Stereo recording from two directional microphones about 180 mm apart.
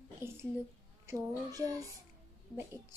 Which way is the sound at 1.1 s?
20° right (ahead or behind).